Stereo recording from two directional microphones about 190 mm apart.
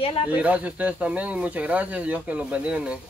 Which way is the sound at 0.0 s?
30° left (ahead or behind).